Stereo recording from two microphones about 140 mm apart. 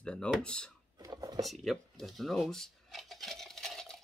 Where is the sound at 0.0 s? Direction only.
5° left (ahead or behind).